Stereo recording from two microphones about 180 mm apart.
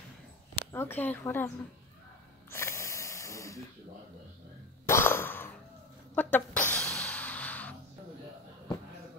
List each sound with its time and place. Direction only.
0.7 s speech: 10° left (ahead or behind)
2.5 s snort: 15° left (ahead or behind)
4.8 s cough: 15° left (ahead or behind)
6.1 s a sound: 10° left (ahead or behind)